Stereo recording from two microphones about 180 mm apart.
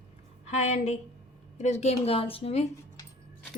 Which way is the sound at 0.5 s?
40° left (ahead or behind).